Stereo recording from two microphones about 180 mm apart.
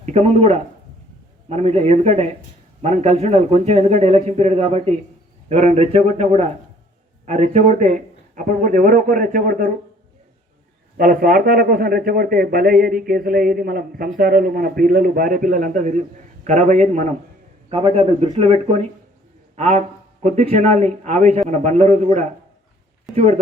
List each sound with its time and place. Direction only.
0.0 s a man's voice: 35° right (ahead or behind)
10.9 s a man's voice: 55° right (ahead or behind)